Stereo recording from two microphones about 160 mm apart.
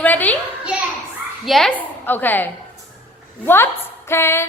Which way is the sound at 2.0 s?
10° left (ahead or behind).